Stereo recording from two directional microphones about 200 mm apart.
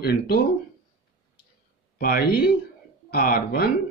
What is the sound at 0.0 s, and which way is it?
Speech, 50° left (ahead or behind).